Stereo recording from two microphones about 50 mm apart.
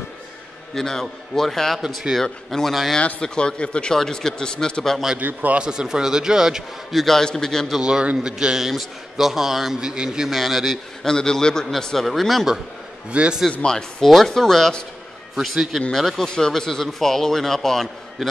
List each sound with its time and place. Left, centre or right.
0.7 s a man's voice: centre
3.9 s a man's voice: centre
5.2 s a man's voice: right
5.6 s a man's voice: centre
6.9 s a man's voice: centre
7.8 s a man's voice: centre
11.1 s a man's voice: centre
13.1 s a man's voice: right
13.5 s a man's voice: left
13.7 s a man's voice: centre
15.5 s a man's voice: centre